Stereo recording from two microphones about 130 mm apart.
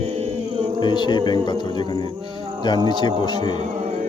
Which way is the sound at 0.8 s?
35° left (ahead or behind).